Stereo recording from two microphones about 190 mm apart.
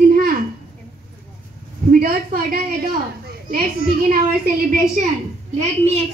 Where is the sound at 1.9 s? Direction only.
50° right (ahead or behind).